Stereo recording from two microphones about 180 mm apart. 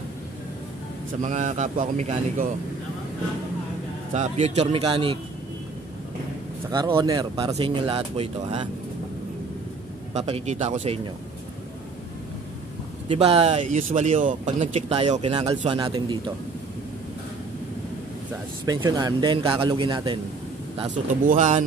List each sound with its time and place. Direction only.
1.2 s a man's voice: 40° right (ahead or behind)
4.1 s speech: 40° right (ahead or behind)
6.7 s speech: 25° right (ahead or behind)
10.1 s speech: 35° right (ahead or behind)
13.1 s speech: 35° right (ahead or behind)
18.7 s speech: 20° right (ahead or behind)
21.3 s a man's voice: 40° right (ahead or behind)